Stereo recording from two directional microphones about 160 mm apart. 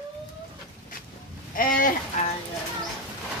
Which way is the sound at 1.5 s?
60° left (ahead or behind).